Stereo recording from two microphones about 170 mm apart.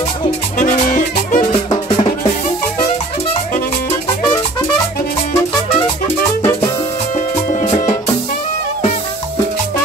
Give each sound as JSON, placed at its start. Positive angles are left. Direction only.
{"t": 0.6, "sound": "music", "side_deg": 50}